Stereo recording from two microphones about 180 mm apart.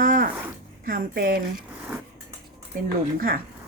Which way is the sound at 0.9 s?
50° right (ahead or behind).